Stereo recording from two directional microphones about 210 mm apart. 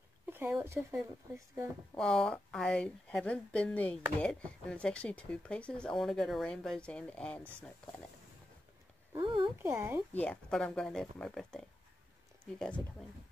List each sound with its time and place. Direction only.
0.3 s speech: 10° right (ahead or behind)
2.0 s speech: 5° left (ahead or behind)
9.1 s a sound: 20° right (ahead or behind)
9.6 s speech: 10° right (ahead or behind)
10.1 s speech: 5° left (ahead or behind)